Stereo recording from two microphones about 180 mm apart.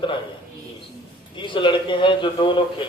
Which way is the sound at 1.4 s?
25° left (ahead or behind).